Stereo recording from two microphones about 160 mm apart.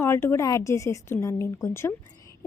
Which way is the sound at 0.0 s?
15° left (ahead or behind).